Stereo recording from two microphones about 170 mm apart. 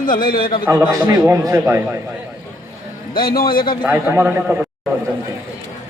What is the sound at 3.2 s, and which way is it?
Speech, 60° left (ahead or behind).